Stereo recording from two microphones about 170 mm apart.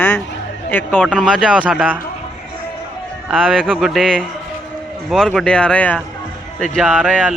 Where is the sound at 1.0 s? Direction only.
5° right (ahead or behind).